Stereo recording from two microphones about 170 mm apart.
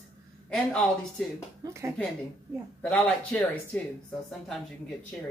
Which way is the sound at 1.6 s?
15° right (ahead or behind).